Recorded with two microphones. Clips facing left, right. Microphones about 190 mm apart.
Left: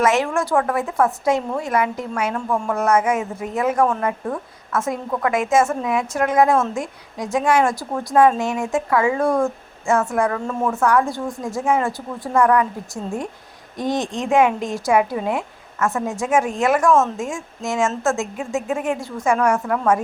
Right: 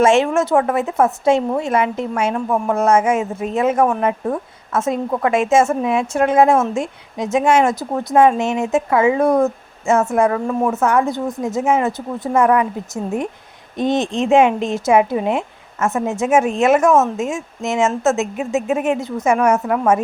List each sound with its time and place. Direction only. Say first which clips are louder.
0.0 s a woman's voice: right 5 dB; 25° right (ahead or behind)